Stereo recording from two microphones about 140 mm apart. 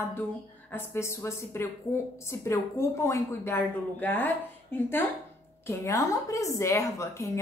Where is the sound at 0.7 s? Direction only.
20° left (ahead or behind).